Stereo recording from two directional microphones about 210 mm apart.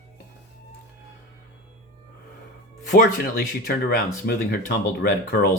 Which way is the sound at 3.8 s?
45° left (ahead or behind).